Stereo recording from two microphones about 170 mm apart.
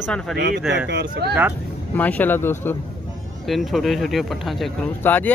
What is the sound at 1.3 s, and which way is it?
Speech, 10° right (ahead or behind).